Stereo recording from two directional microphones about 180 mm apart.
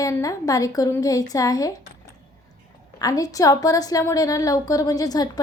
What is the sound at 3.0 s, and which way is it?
A woman's voice, 20° left (ahead or behind).